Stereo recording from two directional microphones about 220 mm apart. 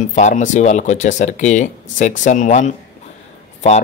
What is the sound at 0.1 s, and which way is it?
Speech, 35° left (ahead or behind).